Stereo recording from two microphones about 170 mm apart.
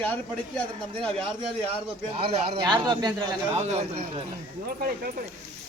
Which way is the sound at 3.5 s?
40° right (ahead or behind).